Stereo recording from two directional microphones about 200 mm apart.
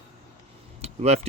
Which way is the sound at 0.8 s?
30° right (ahead or behind).